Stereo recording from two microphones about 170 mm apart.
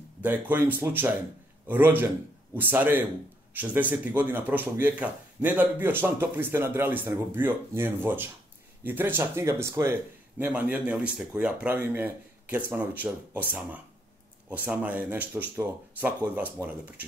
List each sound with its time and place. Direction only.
0.2 s speech: 10° right (ahead or behind)